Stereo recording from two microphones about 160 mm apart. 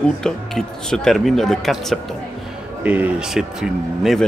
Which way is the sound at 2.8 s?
10° right (ahead or behind).